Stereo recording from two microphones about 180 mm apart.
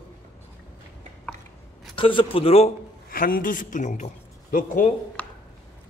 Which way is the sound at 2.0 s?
30° left (ahead or behind).